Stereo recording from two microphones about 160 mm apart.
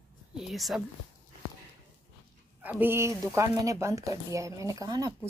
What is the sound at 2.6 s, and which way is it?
Speech, 10° right (ahead or behind).